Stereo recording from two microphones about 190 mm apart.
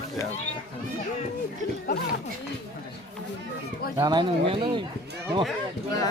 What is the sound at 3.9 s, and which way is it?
Speech, 20° right (ahead or behind).